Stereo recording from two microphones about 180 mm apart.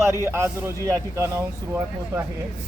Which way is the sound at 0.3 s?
15° right (ahead or behind).